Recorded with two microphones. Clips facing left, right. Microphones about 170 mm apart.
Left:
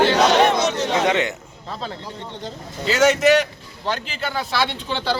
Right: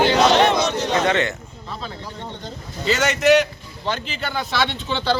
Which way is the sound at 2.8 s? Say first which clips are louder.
Left 3 dB; 5° left (ahead or behind).